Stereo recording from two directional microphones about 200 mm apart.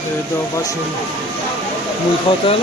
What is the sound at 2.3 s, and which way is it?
Speech, 30° left (ahead or behind).